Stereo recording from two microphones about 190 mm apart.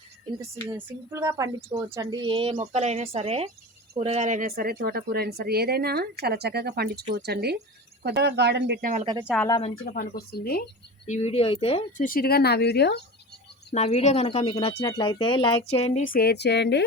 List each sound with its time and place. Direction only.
0.3 s speech: 25° right (ahead or behind); by 8.9 s 60° right (ahead or behind)
9.5 s speech: 30° left (ahead or behind)
9.8 s speech: 55° left (ahead or behind)
11.0 s speech: 30° left (ahead or behind)
11.9 s speech: 50° left (ahead or behind)
13.7 s speech: 35° left (ahead or behind)
16.1 s speech: 55° left (ahead or behind)